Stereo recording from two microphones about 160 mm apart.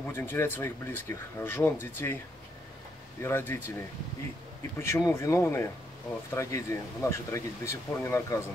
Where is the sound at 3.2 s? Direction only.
15° left (ahead or behind).